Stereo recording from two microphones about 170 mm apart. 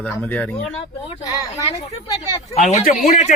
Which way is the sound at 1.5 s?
40° left (ahead or behind).